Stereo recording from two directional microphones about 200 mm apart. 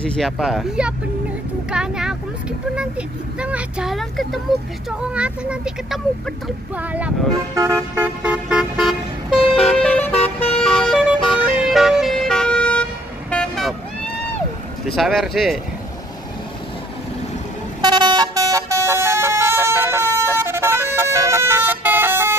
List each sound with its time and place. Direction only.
0.0 s speech: 5° left (ahead or behind)
7.5 s vehicle: 15° right (ahead or behind)
9.4 s vehicle: 30° left (ahead or behind)
9.8 s vehicle: 5° left (ahead or behind)
10.1 s vehicle: 30° left (ahead or behind)
10.6 s vehicle: centre (ahead or behind)
15.0 s speech: centre (ahead or behind)
17.8 s vehicle: 20° right (ahead or behind)